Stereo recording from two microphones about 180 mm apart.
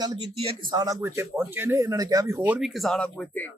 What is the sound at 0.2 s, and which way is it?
Speech, 25° right (ahead or behind).